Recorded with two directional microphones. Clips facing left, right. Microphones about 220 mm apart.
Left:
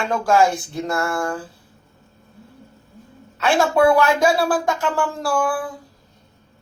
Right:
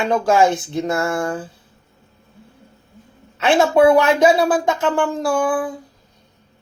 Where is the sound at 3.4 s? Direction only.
20° right (ahead or behind).